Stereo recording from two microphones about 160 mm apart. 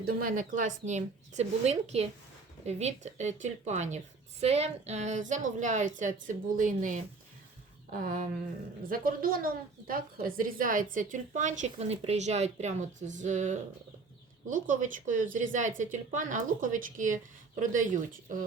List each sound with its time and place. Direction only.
0.0 s speech: 60° right (ahead or behind)